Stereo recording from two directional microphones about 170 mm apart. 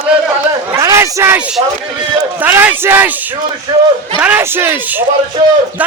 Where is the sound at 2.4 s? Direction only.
10° right (ahead or behind).